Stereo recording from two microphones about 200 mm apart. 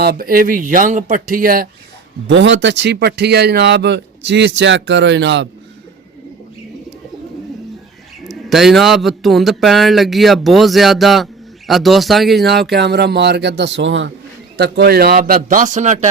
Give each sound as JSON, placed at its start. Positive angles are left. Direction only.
{"t": 0.0, "sound": "speech", "side_deg": -50}
{"t": 2.2, "sound": "speech", "side_deg": -65}
{"t": 8.2, "sound": "speech", "side_deg": 0}
{"t": 12.7, "sound": "speech", "side_deg": -55}
{"t": 14.5, "sound": "speech", "side_deg": -55}